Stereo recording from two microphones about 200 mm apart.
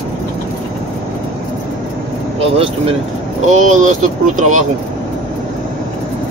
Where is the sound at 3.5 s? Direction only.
40° right (ahead or behind).